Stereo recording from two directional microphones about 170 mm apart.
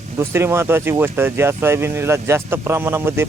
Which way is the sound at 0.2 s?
15° right (ahead or behind).